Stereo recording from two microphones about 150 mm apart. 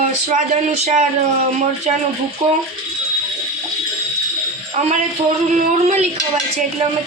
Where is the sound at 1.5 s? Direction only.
50° right (ahead or behind).